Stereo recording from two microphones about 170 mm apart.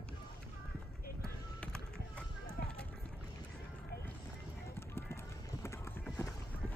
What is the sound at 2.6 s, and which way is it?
Rowboat, 60° left (ahead or behind).